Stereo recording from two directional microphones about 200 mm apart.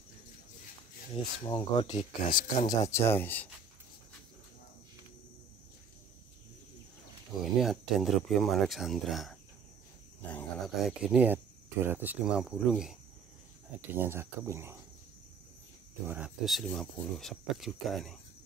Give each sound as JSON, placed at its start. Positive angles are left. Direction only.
{"t": 1.1, "sound": "speech", "side_deg": 20}
{"t": 7.6, "sound": "speech", "side_deg": 0}
{"t": 13.9, "sound": "speech", "side_deg": -10}
{"t": 16.1, "sound": "speech", "side_deg": -5}